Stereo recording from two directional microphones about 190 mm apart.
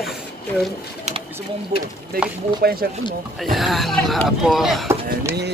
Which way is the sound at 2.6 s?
55° right (ahead or behind).